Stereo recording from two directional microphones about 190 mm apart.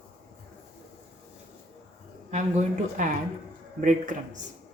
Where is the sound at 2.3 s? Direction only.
40° right (ahead or behind).